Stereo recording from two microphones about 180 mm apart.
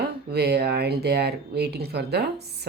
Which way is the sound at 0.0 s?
65° right (ahead or behind).